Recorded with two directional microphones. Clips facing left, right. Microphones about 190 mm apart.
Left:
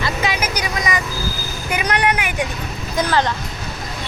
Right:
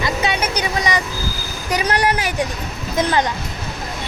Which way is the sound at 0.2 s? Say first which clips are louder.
Right 1 dB; 30° right (ahead or behind).